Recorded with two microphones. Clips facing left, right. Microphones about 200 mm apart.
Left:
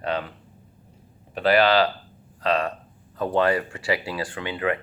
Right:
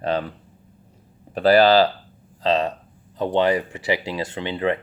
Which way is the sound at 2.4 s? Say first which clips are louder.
Right 3 dB; 25° right (ahead or behind).